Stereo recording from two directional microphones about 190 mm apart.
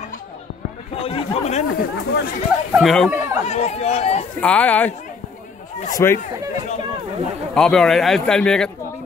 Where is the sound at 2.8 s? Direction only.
Centre (ahead or behind).